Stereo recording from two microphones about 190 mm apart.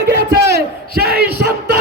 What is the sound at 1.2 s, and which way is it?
Battle cry, 55° right (ahead or behind).